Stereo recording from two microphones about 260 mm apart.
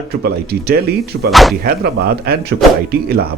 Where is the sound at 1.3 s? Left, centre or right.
Centre.